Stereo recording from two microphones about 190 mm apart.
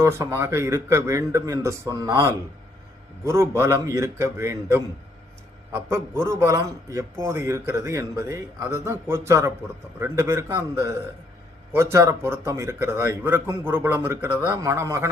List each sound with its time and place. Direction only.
0.0 s a man's voice: 15° right (ahead or behind)